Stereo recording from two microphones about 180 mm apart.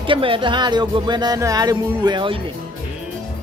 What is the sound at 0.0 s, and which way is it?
Speech, 30° right (ahead or behind).